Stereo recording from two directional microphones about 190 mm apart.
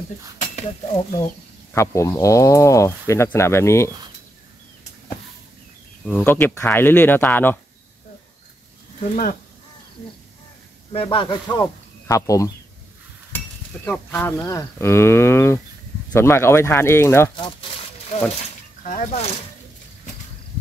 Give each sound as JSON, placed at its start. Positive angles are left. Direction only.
{"t": 0.4, "sound": "speech", "side_deg": 35}
{"t": 1.7, "sound": "speech", "side_deg": 15}
{"t": 6.0, "sound": "speech", "side_deg": 10}
{"t": 9.0, "sound": "speech", "side_deg": 40}
{"t": 10.9, "sound": "speech", "side_deg": 30}
{"t": 11.6, "sound": "speech", "side_deg": 15}
{"t": 13.8, "sound": "speech", "side_deg": 10}
{"t": 17.4, "sound": "wild animals", "side_deg": 30}
{"t": 18.3, "sound": "a sound", "side_deg": 40}